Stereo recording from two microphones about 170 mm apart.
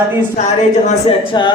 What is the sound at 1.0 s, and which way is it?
Speech, 25° left (ahead or behind).